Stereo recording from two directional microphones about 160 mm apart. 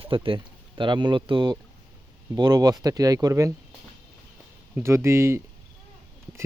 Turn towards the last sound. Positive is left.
turn(degrees=-15)  # may be behind; listen again after turning